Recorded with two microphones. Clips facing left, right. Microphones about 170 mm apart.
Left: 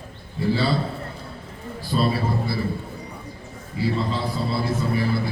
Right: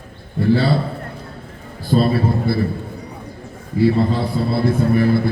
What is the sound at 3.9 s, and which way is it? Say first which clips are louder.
A man's voice: right 7 dB; 55° right (ahead or behind).